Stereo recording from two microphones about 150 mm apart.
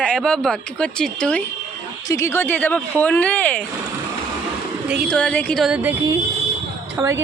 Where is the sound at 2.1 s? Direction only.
20° left (ahead or behind).